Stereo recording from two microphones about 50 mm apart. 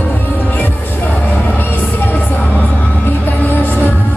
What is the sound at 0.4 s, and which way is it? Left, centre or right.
Music, left.